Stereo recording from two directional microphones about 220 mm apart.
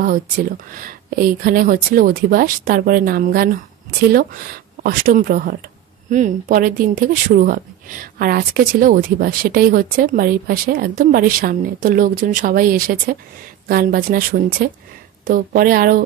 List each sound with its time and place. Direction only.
0.0 s speech: 40° right (ahead or behind)